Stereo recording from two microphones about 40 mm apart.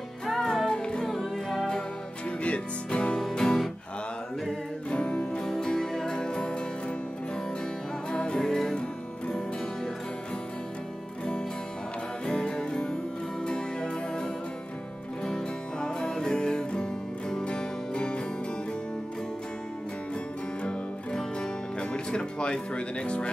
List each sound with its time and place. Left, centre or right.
0.3 s music: centre
1.0 s music: centre
2.4 s music: left
3.3 s music: centre
4.9 s music: left
5.4 s music: centre
8.1 s music: left
12.3 s music: left
21.4 s music: left